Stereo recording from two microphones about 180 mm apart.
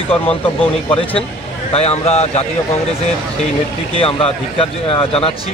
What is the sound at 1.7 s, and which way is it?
Speech, 35° left (ahead or behind).